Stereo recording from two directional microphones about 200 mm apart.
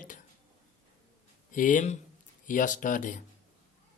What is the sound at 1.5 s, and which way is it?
Speech, 40° left (ahead or behind).